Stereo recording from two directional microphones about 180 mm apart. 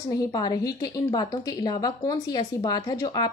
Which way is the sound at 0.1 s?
20° left (ahead or behind).